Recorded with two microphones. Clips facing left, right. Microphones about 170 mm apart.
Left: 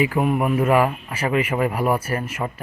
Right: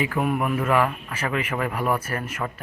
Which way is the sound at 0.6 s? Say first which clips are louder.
Left 4 dB; 15° left (ahead or behind).